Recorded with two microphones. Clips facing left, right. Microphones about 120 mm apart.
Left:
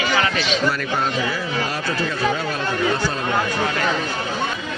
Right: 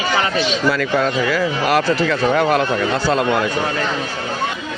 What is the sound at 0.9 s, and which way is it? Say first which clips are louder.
A man's voice: right 5 dB; 90° right.